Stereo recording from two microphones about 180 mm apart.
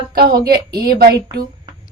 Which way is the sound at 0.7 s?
20° right (ahead or behind).